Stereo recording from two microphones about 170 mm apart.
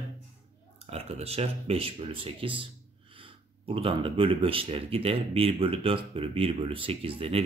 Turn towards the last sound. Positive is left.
turn(degrees=-35)  # may be behind; listen again after turning